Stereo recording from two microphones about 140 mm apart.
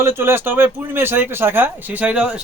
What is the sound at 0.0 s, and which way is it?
A man's voice, 15° right (ahead or behind).